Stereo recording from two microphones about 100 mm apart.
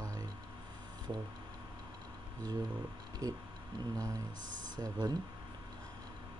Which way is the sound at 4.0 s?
35° right (ahead or behind).